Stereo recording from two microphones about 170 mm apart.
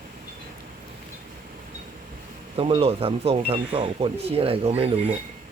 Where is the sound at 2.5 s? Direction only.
35° right (ahead or behind).